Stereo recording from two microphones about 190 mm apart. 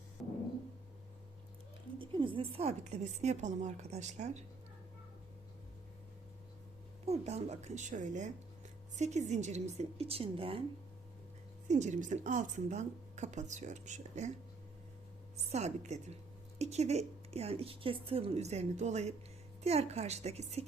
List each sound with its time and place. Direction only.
0.2 s music: centre (ahead or behind)
2.0 s speech: 25° right (ahead or behind)
7.0 s speech: 35° right (ahead or behind)
11.7 s speech: 40° right (ahead or behind)
15.5 s speech: 35° right (ahead or behind)